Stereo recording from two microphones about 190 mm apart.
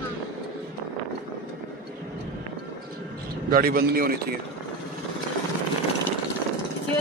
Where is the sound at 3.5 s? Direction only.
50° right (ahead or behind).